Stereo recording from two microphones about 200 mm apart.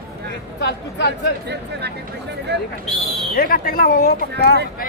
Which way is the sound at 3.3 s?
45° left (ahead or behind).